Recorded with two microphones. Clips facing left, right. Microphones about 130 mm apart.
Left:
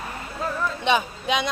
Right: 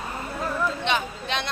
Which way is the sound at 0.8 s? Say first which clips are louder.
Left 4 dB; 10° left (ahead or behind).